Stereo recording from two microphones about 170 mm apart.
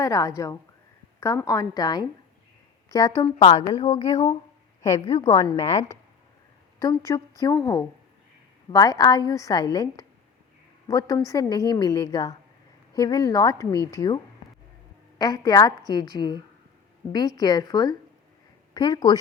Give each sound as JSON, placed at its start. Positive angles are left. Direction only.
{"t": 0.0, "sound": "a woman's voice", "side_deg": 20}
{"t": 3.3, "sound": "a woman's voice", "side_deg": 35}
{"t": 4.8, "sound": "a woman's voice", "side_deg": 20}
{"t": 15.2, "sound": "a woman's voice", "side_deg": 25}